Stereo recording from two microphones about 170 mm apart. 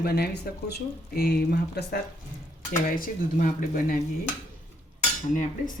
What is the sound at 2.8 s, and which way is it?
Speech, 55° left (ahead or behind).